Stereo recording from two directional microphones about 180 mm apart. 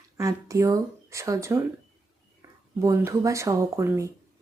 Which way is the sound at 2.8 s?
15° right (ahead or behind).